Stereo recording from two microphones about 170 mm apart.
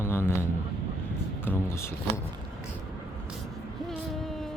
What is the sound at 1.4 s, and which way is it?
Speech, 15° left (ahead or behind).